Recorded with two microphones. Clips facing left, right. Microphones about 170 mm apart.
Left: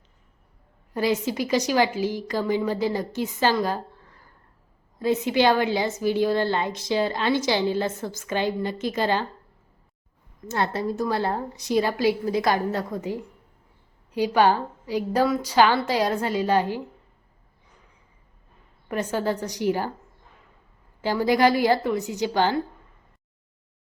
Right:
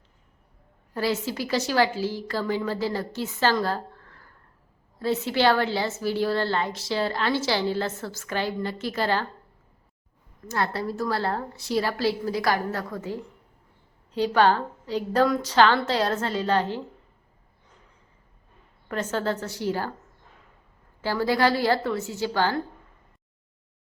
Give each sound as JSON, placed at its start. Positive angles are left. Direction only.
{"t": 0.9, "sound": "a woman's voice", "side_deg": 15}
{"t": 10.5, "sound": "a woman's voice", "side_deg": 20}
{"t": 18.9, "sound": "a woman's voice", "side_deg": 15}
{"t": 21.0, "sound": "a woman's voice", "side_deg": 15}